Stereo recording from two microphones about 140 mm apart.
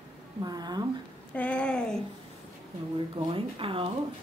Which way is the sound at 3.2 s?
40° right (ahead or behind).